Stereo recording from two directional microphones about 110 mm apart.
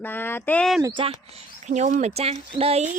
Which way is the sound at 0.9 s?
50° right (ahead or behind).